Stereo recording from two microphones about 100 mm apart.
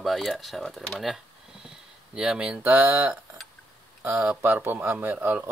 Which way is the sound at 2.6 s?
20° right (ahead or behind).